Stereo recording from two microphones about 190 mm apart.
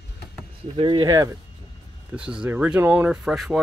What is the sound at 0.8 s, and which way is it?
Speech, 25° right (ahead or behind).